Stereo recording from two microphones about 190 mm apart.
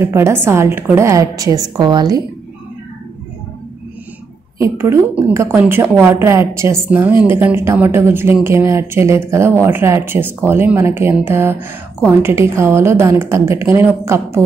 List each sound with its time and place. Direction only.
0.0 s a woman's voice: 15° right (ahead or behind)
4.6 s a woman's voice: 15° right (ahead or behind)